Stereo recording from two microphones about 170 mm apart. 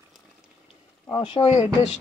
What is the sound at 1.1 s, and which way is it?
Speech, 30° left (ahead or behind).